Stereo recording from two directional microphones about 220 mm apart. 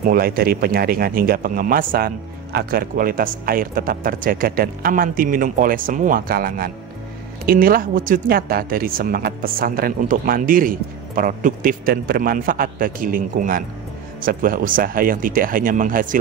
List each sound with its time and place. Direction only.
0.0 s speech: 40° right (ahead or behind)